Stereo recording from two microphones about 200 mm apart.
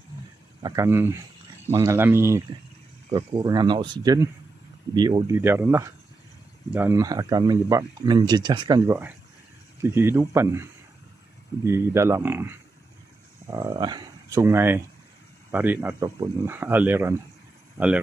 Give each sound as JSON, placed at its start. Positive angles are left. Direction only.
{"t": 0.6, "sound": "speech", "side_deg": -20}
{"t": 3.1, "sound": "speech", "side_deg": -25}